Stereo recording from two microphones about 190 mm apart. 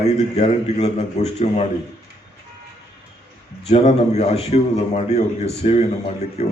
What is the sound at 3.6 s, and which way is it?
A man's voice, 35° left (ahead or behind).